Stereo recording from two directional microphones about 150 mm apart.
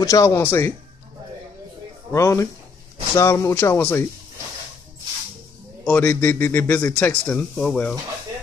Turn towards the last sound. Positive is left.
turn(degrees=10)  # may be behind; listen again after turning